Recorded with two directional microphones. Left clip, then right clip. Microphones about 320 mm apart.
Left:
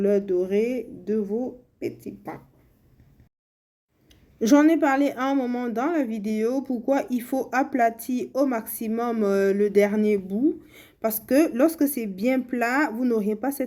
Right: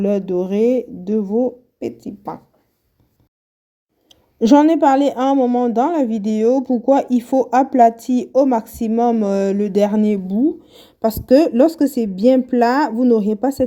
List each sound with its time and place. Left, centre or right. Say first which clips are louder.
0.0 s speech: right 3 dB; centre
4.1 s speech: right 7 dB; centre